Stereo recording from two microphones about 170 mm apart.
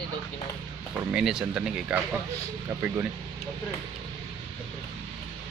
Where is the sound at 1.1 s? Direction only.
5° right (ahead or behind).